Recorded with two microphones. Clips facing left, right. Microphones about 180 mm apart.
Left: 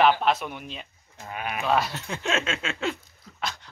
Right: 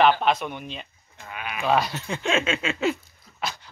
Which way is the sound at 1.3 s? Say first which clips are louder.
Left 2 dB; 40° left (ahead or behind).